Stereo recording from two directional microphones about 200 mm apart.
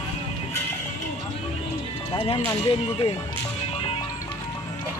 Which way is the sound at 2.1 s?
25° left (ahead or behind).